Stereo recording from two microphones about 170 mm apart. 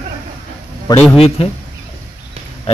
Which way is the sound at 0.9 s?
25° left (ahead or behind).